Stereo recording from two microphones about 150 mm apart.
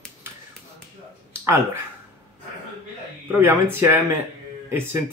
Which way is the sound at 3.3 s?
15° right (ahead or behind).